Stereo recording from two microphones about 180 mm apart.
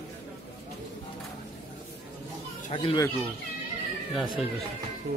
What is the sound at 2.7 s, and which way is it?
Speech, 30° left (ahead or behind).